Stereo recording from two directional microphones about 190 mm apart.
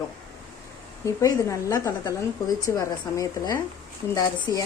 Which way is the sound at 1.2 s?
15° left (ahead or behind).